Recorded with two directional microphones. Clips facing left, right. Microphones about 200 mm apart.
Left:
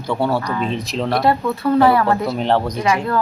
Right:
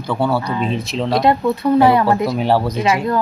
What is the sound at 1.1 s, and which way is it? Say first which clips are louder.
Speech: right 3 dB; 20° right (ahead or behind).